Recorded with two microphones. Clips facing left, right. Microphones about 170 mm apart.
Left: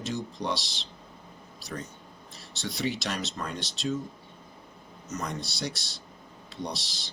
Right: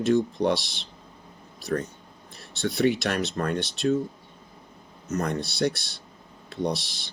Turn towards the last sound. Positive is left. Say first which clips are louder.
# right 8 dB
turn(degrees=-55)  # may be behind; listen again after turning